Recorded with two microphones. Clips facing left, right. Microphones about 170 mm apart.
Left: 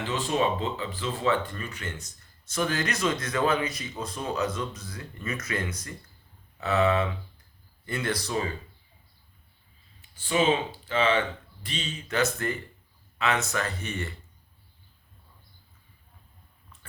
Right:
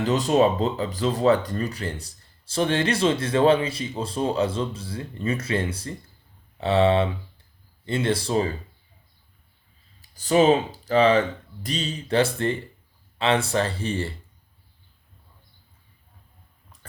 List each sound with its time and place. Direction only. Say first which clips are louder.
0.0 s speech: right 7 dB; 40° right (ahead or behind)
10.0 s speech: right 7 dB; 40° right (ahead or behind)